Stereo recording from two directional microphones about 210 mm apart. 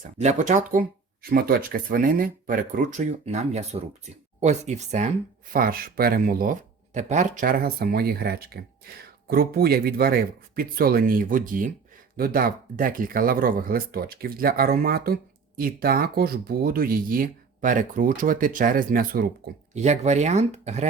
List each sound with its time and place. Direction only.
0.2 s speech: 35° right (ahead or behind)
5.5 s speech: 45° right (ahead or behind)
19.7 s speech: 35° right (ahead or behind)